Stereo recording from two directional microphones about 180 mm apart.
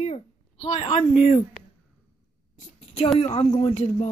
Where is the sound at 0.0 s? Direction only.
40° left (ahead or behind).